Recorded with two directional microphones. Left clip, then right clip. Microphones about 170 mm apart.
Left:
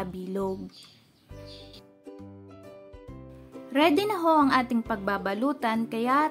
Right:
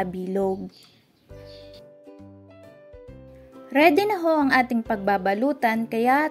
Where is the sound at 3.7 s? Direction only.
15° right (ahead or behind).